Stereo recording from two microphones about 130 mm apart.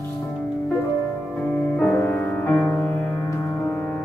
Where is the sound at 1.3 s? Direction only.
15° left (ahead or behind).